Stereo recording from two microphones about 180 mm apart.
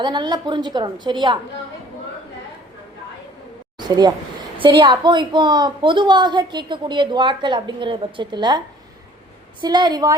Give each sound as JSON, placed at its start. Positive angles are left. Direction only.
{"t": 0.0, "sound": "a woman's voice", "side_deg": -25}
{"t": 3.8, "sound": "a sound", "side_deg": -25}
{"t": 4.5, "sound": "a woman's voice", "side_deg": -30}